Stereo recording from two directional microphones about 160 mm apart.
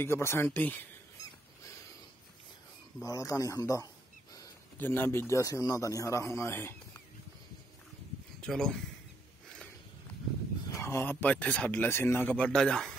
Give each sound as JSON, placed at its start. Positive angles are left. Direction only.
{"t": 0.0, "sound": "a man's voice", "side_deg": 15}
{"t": 3.0, "sound": "a man's voice", "side_deg": 20}
{"t": 8.4, "sound": "speech", "side_deg": 5}
{"t": 10.7, "sound": "a man's voice", "side_deg": 15}